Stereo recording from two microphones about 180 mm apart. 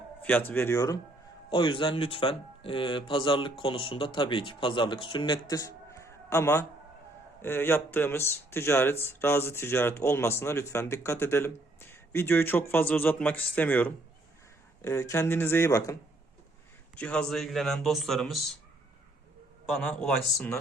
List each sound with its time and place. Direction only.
0.2 s speech: 10° left (ahead or behind)
1.5 s speech: 25° left (ahead or behind); by 18.4 s centre (ahead or behind)
20.0 s speech: 10° left (ahead or behind)